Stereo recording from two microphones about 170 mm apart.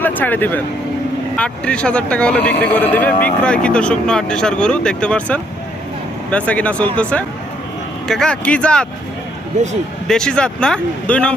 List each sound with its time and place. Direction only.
0.0 s speech: 10° left (ahead or behind)
10.1 s speech: 5° left (ahead or behind)